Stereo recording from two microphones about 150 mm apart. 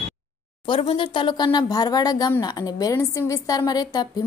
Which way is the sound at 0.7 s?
35° left (ahead or behind).